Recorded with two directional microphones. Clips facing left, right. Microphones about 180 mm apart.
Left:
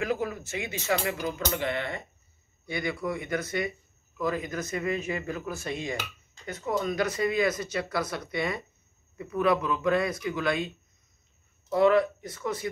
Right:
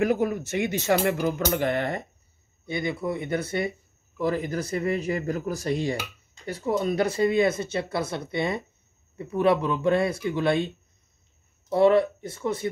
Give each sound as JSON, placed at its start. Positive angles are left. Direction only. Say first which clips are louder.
{"t": 0.0, "sound": "speech", "louder": "right 6 dB", "side_deg": -55}
{"t": 2.6, "sound": "speech", "louder": "right 3 dB", "side_deg": -25}
{"t": 11.7, "sound": "speech", "louder": "right 3 dB", "side_deg": -30}